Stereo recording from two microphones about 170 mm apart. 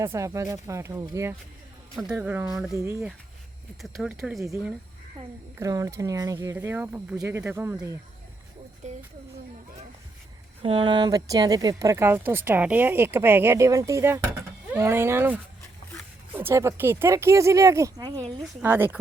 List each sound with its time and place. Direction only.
0.0 s speech: 15° right (ahead or behind)
3.8 s speech: centre (ahead or behind)
5.5 s speech: 20° right (ahead or behind)
8.8 s a sound: 45° right (ahead or behind)
10.6 s speech: 30° right (ahead or behind); by 18.9 s 15° right (ahead or behind)